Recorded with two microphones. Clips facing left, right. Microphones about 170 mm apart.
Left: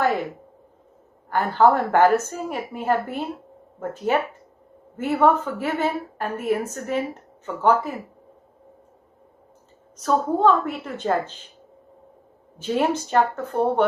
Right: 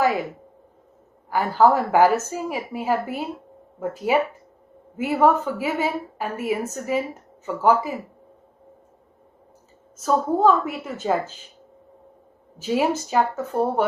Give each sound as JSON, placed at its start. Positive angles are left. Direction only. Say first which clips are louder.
{"t": 0.0, "sound": "a woman's voice", "louder": "right 1 dB", "side_deg": -5}
{"t": 1.3, "sound": "a woman's voice", "louder": "even", "side_deg": -5}
{"t": 9.9, "sound": "a woman's voice", "louder": "even", "side_deg": -5}
{"t": 12.5, "sound": "a woman's voice", "louder": "even", "side_deg": -5}